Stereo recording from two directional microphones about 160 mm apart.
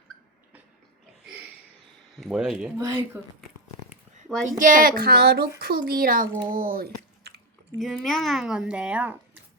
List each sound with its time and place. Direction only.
2.1 s speech: 5° right (ahead or behind)
2.7 s speech: 15° right (ahead or behind)
4.5 s speech: 55° right (ahead or behind)
7.8 s speech: centre (ahead or behind)